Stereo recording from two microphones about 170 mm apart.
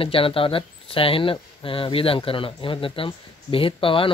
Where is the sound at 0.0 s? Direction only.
30° left (ahead or behind).